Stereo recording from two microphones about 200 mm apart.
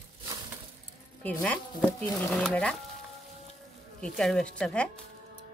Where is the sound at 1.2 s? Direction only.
5° left (ahead or behind).